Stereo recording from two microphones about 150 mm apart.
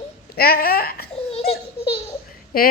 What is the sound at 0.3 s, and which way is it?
Speech, 85° left.